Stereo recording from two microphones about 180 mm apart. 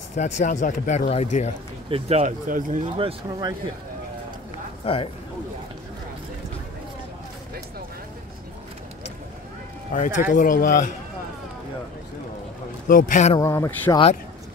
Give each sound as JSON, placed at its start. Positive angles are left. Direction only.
{"t": 0.1, "sound": "speech", "side_deg": 40}
{"t": 1.9, "sound": "speech", "side_deg": -30}
{"t": 3.0, "sound": "speech", "side_deg": -25}
{"t": 4.8, "sound": "speech", "side_deg": 30}
{"t": 9.9, "sound": "speech", "side_deg": 45}
{"t": 12.8, "sound": "speech", "side_deg": 50}
{"t": 13.4, "sound": "speech", "side_deg": 15}